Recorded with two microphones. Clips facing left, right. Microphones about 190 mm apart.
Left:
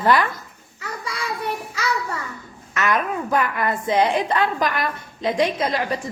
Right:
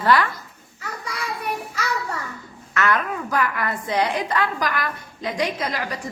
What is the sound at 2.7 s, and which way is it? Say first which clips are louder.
A woman's voice: left 1 dB; 20° left (ahead or behind).